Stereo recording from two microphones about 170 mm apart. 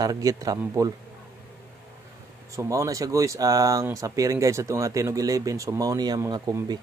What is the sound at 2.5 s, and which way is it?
Speech, 20° right (ahead or behind).